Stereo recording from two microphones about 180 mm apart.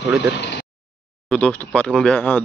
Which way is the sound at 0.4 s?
70° left (ahead or behind).